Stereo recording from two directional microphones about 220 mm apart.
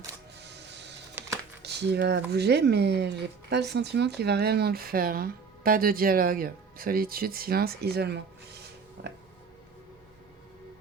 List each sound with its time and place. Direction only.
0.4 s printer: 50° right (ahead or behind)
1.6 s speech: 50° right (ahead or behind)